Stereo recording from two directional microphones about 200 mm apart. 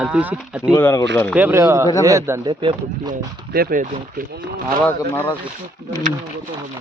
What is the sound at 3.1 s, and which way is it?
Speech, 45° right (ahead or behind).